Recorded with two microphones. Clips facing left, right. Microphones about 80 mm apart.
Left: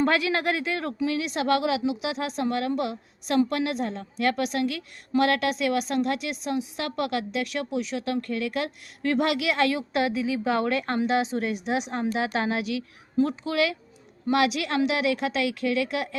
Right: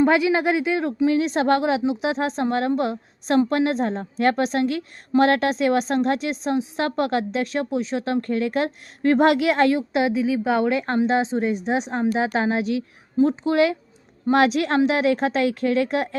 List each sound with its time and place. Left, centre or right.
0.0 s a woman's voice: centre; by 9.8 s right
9.9 s a woman's voice: right